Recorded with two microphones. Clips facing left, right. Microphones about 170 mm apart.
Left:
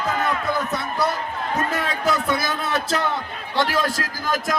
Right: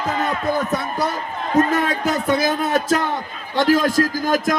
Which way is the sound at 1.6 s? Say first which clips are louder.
Right 9 dB; 45° right (ahead or behind).